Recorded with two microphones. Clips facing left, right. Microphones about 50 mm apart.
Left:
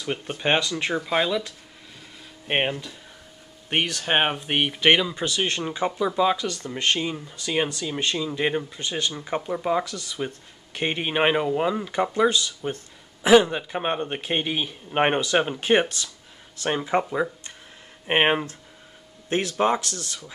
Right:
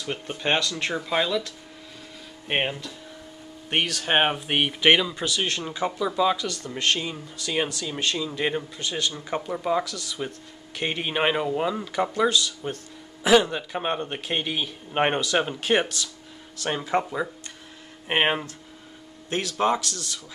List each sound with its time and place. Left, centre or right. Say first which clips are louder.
0.0 s speech: left 2 dB; centre
3.7 s speech: even; centre
9.8 s speech: left 1 dB; centre
18.0 s speech: left 2 dB; centre